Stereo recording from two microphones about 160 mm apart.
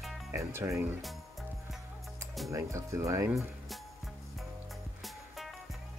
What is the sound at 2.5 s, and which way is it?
Speech, 20° right (ahead or behind).